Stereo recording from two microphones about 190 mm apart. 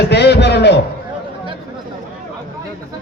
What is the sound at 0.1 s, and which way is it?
Speech, 60° left (ahead or behind).